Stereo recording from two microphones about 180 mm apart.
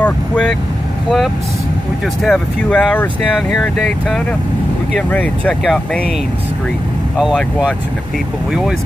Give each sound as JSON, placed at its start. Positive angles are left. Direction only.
{"t": 0.0, "sound": "speech", "side_deg": 5}
{"t": 2.2, "sound": "speech", "side_deg": 5}
{"t": 7.2, "sound": "speech", "side_deg": 0}